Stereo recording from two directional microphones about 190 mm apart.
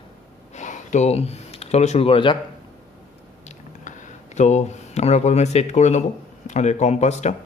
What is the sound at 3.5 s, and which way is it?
Speech, 40° left (ahead or behind).